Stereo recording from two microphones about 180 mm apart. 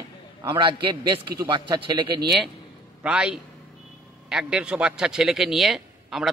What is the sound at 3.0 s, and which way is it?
A man's voice, 5° right (ahead or behind).